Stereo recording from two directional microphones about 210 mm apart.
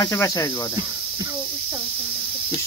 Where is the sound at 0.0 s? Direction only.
15° left (ahead or behind).